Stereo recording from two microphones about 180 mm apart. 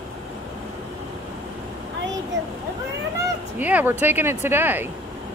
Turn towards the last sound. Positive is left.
turn(degrees=-10)  # may be behind; listen again after turning